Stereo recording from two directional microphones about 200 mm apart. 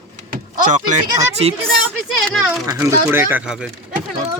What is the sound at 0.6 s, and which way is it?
Speech, 40° right (ahead or behind).